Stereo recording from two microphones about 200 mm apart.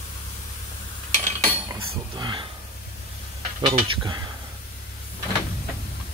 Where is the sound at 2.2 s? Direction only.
25° right (ahead or behind).